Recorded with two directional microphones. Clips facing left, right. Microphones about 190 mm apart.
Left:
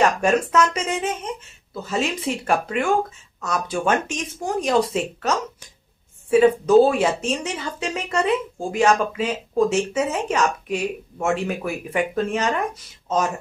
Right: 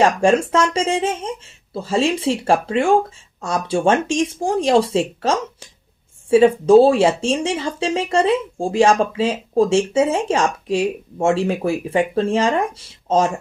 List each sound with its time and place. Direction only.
0.0 s speech: 30° right (ahead or behind)